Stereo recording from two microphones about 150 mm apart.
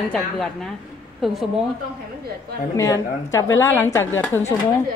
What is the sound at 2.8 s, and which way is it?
A woman's voice, 20° left (ahead or behind).